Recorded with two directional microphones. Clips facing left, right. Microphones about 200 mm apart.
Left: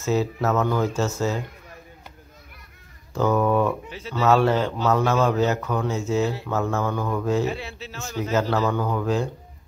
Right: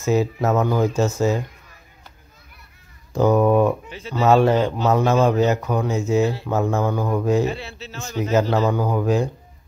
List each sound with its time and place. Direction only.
0.0 s a man's voice: 15° right (ahead or behind)
3.1 s a man's voice: 15° right (ahead or behind)
7.4 s speech: 10° left (ahead or behind)
8.2 s a man's voice: 15° right (ahead or behind)